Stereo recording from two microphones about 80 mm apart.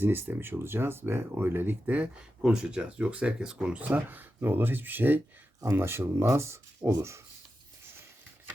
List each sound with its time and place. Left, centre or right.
0.0 s speech: right
2.0 s speech: centre; by 7.2 s right